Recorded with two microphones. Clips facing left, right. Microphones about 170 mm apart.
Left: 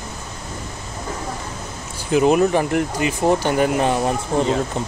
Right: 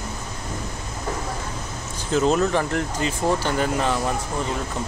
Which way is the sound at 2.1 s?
15° left (ahead or behind).